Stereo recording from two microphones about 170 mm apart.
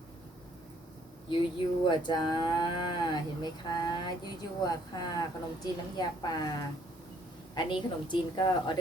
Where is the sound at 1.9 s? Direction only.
25° left (ahead or behind).